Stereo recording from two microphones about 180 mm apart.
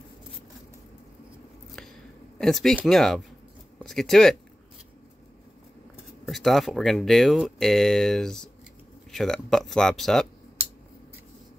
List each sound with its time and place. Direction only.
2.3 s speech: centre (ahead or behind)
6.2 s speech: centre (ahead or behind)